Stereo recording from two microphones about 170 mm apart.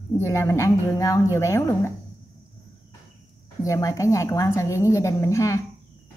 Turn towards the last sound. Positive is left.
turn(degrees=15)  # may be behind; listen again after turning